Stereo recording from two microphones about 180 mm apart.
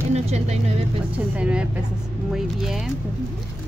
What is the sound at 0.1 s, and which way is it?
Speech, 35° right (ahead or behind).